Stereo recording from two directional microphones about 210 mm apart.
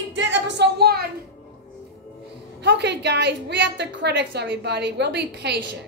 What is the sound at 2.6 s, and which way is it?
A woman's voice, 55° right (ahead or behind).